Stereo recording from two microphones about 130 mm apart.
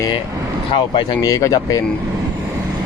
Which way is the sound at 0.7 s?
40° left (ahead or behind).